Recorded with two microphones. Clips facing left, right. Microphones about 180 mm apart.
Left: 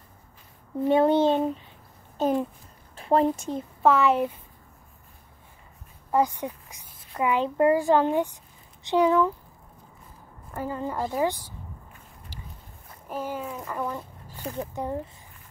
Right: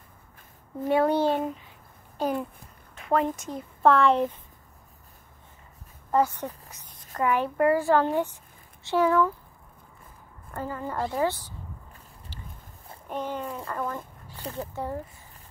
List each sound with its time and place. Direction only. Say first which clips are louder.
0.8 s a child's voice: left 3 dB; 20° left (ahead or behind)
3.8 s speech: right 1 dB; 5° left (ahead or behind)
6.1 s speech: even; 10° left (ahead or behind)
10.5 s speech: left 2 dB; 15° left (ahead or behind)
13.1 s speech: even; 5° left (ahead or behind)